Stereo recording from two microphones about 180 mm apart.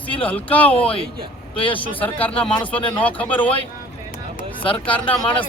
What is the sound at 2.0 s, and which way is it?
Speech, 10° left (ahead or behind).